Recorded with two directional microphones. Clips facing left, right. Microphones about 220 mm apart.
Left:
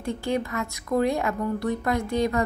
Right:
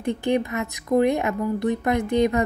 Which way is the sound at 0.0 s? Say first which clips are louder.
Right 4 dB; 20° right (ahead or behind).